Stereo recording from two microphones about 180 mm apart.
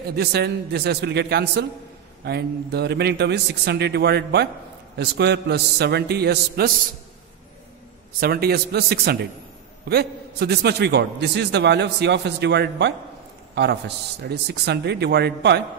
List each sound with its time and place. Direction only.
0.0 s a man's voice: 60° right (ahead or behind)
8.2 s a man's voice: 60° right (ahead or behind)